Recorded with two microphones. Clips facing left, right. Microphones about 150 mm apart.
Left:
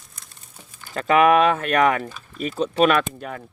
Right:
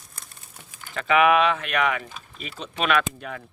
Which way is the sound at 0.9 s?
40° left (ahead or behind).